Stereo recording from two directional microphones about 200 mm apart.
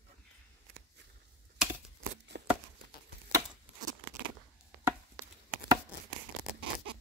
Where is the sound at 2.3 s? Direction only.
60° right (ahead or behind).